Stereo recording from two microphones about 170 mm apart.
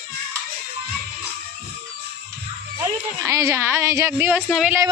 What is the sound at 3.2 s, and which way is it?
Speech, 20° right (ahead or behind).